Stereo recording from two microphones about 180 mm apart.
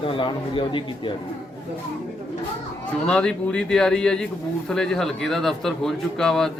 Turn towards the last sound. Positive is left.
turn(degrees=5)  # may be behind; listen again after turning